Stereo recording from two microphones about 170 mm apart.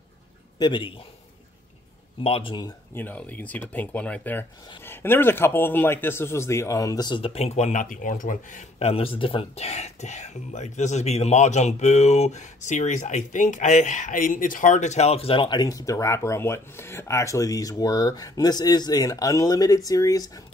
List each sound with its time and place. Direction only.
0.6 s speech: 30° left (ahead or behind)
2.2 s speech: 30° left (ahead or behind)
2.9 s speech: 10° left (ahead or behind)